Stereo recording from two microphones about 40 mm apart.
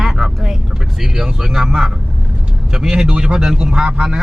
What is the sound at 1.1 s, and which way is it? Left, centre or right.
Speech, centre.